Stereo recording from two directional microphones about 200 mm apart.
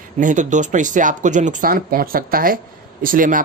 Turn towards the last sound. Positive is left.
turn(degrees=-45)  # may be behind; listen again after turning